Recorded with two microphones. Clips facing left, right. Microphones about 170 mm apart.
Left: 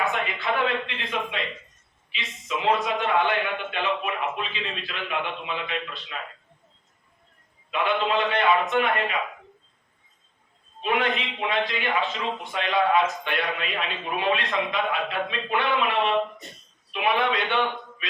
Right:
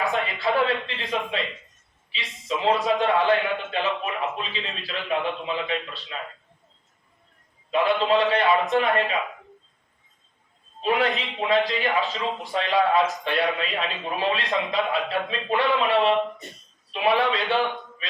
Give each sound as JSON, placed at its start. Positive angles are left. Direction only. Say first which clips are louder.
{"t": 0.0, "sound": "a sound", "louder": "right 2 dB", "side_deg": -35}
{"t": 2.0, "sound": "a man's voice", "louder": "right 3 dB", "side_deg": -35}
{"t": 7.7, "sound": "a man's voice", "louder": "right 4 dB", "side_deg": -35}
{"t": 10.8, "sound": "a man's voice", "louder": "right 2 dB", "side_deg": -35}